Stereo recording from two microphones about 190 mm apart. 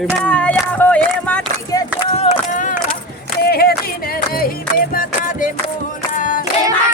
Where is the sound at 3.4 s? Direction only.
55° left (ahead or behind).